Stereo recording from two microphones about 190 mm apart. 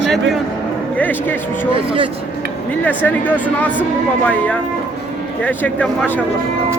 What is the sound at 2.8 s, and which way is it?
Speech, 10° left (ahead or behind).